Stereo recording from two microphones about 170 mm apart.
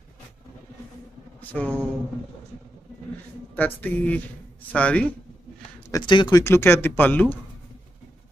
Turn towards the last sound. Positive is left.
turn(degrees=10)  # may be behind; listen again after turning